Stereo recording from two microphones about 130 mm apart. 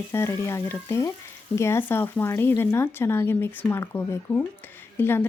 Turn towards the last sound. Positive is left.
turn(degrees=15)  # may be behind; listen again after turning